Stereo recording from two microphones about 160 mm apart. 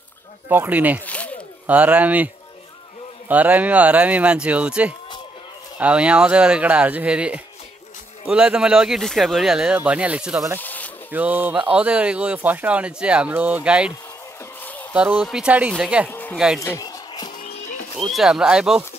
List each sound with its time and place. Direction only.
0.5 s speech: 10° right (ahead or behind)
1.0 s a sound: 10° left (ahead or behind)
1.7 s speech: 10° right (ahead or behind)
10.6 s a sound: 10° left (ahead or behind)
11.1 s speech: 10° right (ahead or behind)
14.6 s a sound: 10° left (ahead or behind)
14.9 s speech: 10° right (ahead or behind)
16.1 s speech: 10° left (ahead or behind)
16.3 s speech: 5° right (ahead or behind)
16.6 s a sound: 20° left (ahead or behind)
17.4 s music: 50° left (ahead or behind)
17.9 s speech: centre (ahead or behind)